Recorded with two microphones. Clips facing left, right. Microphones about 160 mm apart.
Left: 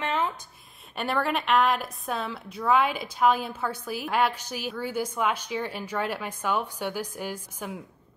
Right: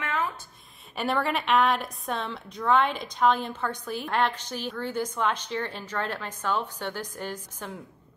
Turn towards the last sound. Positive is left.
turn(degrees=10)  # may be behind; listen again after turning